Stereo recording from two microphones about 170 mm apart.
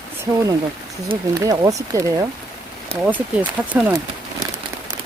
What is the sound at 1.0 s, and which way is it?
Speech, 20° right (ahead or behind).